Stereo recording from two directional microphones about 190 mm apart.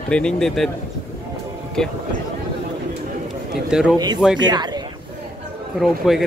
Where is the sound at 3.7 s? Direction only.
5° right (ahead or behind).